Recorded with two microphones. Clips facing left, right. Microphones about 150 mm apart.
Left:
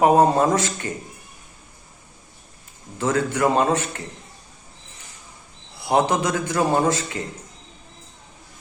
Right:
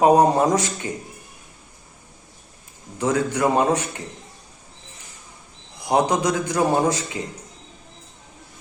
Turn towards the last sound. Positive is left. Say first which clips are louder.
# even
turn(degrees=-15)  # may be behind; listen again after turning